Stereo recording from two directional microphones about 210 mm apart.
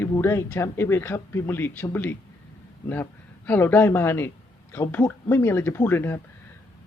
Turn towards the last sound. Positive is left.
turn(degrees=10)  # may be behind; listen again after turning